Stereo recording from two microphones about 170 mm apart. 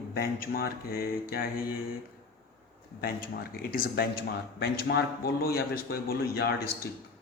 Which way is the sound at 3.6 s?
60° left (ahead or behind).